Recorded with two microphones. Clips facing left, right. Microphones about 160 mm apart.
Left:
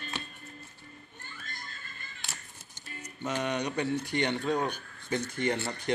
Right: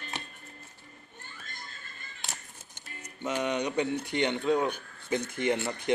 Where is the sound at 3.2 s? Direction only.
15° right (ahead or behind).